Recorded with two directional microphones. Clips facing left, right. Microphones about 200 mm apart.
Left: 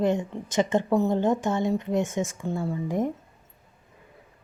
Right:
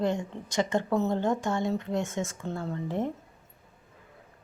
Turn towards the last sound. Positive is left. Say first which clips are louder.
# left 4 dB
turn(degrees=10)  # may be behind; listen again after turning